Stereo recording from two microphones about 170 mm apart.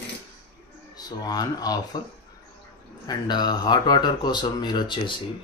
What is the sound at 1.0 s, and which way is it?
Speech, 25° left (ahead or behind).